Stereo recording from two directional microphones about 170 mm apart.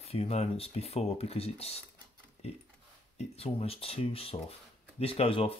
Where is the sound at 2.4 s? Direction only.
40° left (ahead or behind).